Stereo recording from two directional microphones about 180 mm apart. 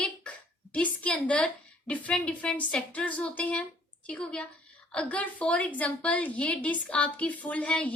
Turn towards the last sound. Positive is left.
turn(degrees=5)  # may be behind; listen again after turning